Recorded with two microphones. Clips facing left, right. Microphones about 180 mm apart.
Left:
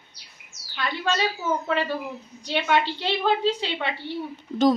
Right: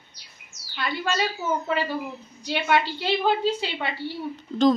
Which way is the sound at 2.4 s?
5° right (ahead or behind).